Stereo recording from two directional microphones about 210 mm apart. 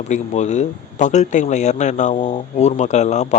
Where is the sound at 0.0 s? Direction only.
35° left (ahead or behind).